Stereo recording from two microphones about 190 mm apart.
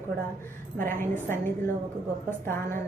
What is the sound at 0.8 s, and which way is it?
A woman's voice, 10° left (ahead or behind).